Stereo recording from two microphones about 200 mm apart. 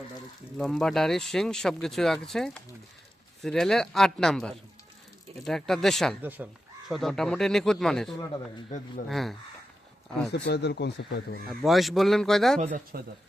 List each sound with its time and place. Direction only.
0.6 s speech: centre (ahead or behind)
10.3 s speech: 60° left (ahead or behind)
11.4 s speech: centre (ahead or behind)
12.5 s speech: 40° right (ahead or behind)